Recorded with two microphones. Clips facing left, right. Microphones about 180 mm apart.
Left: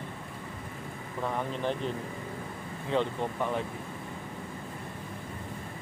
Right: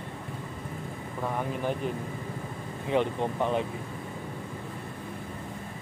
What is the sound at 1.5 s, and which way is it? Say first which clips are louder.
Speech: right 1 dB; 10° right (ahead or behind).